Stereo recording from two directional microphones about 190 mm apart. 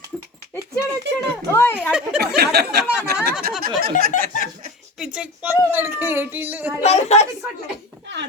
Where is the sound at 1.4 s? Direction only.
10° left (ahead or behind).